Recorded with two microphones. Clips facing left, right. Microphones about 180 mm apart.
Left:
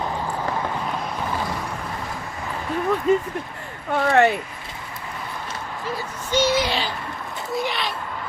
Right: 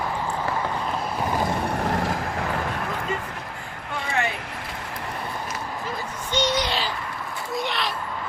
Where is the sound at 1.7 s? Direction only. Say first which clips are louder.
Right 6 dB; 75° right (ahead or behind).